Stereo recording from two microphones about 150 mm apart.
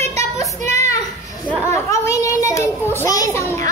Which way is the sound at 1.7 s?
20° left (ahead or behind).